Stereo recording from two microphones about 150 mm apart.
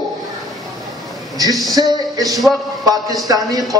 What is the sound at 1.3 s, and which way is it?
A woman's voice, 25° right (ahead or behind).